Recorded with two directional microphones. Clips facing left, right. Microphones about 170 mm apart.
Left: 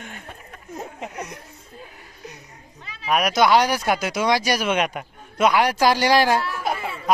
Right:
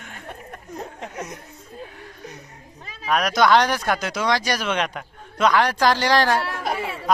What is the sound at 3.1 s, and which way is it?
Speech, 5° left (ahead or behind).